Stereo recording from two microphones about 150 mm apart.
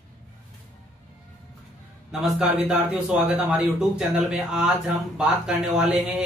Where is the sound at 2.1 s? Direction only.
5° right (ahead or behind).